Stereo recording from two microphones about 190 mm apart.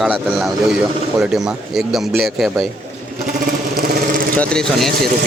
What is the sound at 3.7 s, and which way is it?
Vehicle, 50° right (ahead or behind).